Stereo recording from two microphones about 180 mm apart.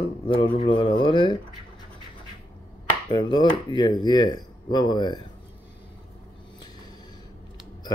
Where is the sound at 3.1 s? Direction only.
25° left (ahead or behind).